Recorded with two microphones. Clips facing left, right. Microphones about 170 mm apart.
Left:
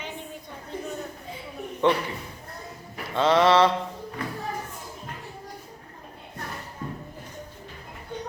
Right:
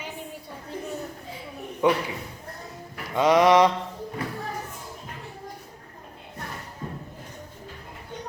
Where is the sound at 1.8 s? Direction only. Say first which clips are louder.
Even; 10° right (ahead or behind).